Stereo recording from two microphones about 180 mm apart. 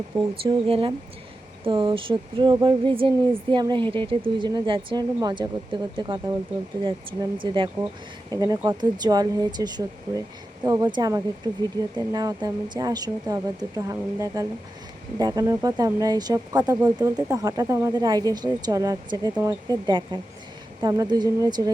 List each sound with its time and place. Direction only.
0.4 s speech: 30° right (ahead or behind)